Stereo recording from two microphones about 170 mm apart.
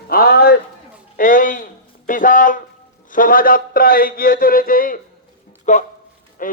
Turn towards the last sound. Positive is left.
turn(degrees=55)  # may be behind; listen again after turning